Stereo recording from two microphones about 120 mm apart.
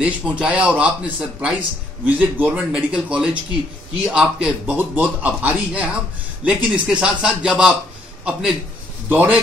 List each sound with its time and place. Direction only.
0.0 s a man's voice: 10° right (ahead or behind)